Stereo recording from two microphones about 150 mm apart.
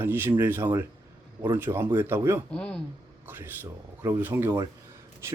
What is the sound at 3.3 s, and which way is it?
Speech, 15° right (ahead or behind).